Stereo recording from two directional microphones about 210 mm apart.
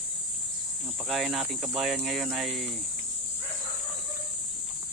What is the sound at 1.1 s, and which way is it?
Speech, centre (ahead or behind).